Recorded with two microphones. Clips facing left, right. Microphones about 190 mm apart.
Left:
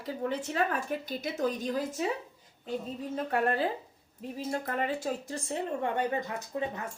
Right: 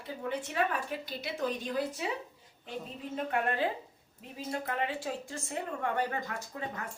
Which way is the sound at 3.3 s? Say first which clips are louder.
Left 3 dB; 35° left (ahead or behind).